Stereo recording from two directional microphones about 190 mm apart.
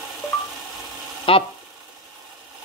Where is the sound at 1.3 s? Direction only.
30° left (ahead or behind).